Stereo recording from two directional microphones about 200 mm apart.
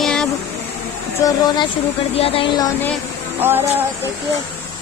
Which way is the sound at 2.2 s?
30° left (ahead or behind).